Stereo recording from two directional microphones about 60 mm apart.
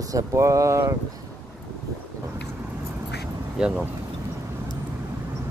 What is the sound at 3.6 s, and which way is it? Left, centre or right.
Speech, centre.